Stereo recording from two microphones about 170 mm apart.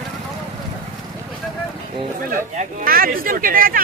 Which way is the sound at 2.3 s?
55° right (ahead or behind).